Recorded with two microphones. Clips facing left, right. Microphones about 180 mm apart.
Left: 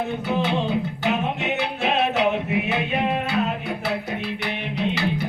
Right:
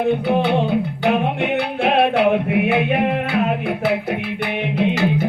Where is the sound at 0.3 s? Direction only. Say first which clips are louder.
Right 5 dB; 60° right (ahead or behind).